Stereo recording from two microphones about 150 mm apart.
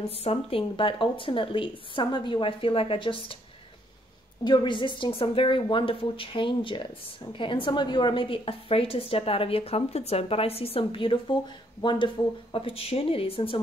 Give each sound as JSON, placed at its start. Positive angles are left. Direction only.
{"t": 0.2, "sound": "a woman's voice", "side_deg": 40}
{"t": 4.5, "sound": "a woman's voice", "side_deg": 30}